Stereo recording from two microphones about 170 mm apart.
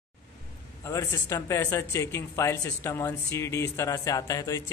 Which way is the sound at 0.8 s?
20° left (ahead or behind).